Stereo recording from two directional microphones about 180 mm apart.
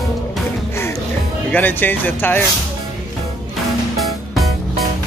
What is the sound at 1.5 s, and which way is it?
Music, 10° left (ahead or behind).